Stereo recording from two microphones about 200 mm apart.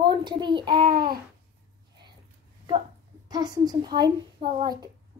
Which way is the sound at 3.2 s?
20° right (ahead or behind).